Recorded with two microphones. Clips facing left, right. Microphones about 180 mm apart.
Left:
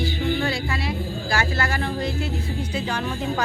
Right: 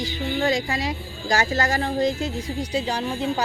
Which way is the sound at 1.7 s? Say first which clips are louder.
Right 2 dB; 40° right (ahead or behind).